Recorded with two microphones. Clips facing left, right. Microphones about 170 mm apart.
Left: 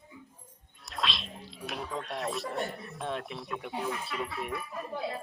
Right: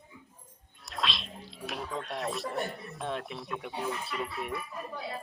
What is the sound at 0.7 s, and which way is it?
Speech, centre (ahead or behind).